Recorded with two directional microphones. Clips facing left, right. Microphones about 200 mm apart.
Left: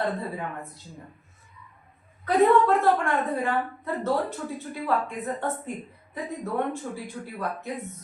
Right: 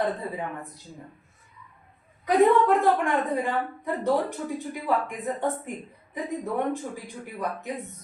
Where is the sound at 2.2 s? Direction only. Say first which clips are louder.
Even; 15° right (ahead or behind).